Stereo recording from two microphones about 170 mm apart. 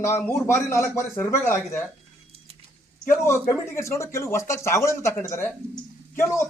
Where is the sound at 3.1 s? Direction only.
15° left (ahead or behind).